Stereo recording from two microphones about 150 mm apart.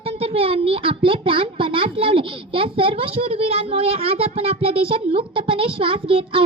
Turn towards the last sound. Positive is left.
turn(degrees=-35)  # may be behind; listen again after turning